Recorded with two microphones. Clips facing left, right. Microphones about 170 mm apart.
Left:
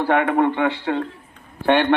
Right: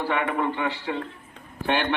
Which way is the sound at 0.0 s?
60° left (ahead or behind).